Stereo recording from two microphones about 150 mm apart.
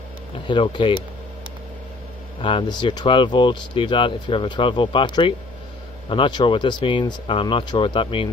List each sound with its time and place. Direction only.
0.5 s speech: 35° left (ahead or behind)
2.4 s speech: 30° left (ahead or behind)